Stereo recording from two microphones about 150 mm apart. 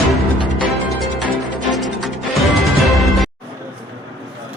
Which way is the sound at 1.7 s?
Centre (ahead or behind).